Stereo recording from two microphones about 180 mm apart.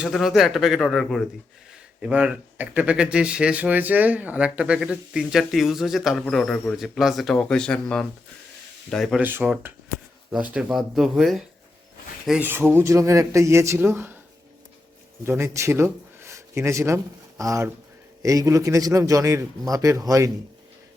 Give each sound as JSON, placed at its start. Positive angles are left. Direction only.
{"t": 0.0, "sound": "speech", "side_deg": 0}
{"t": 9.2, "sound": "speech", "side_deg": -10}
{"t": 15.2, "sound": "speech", "side_deg": -15}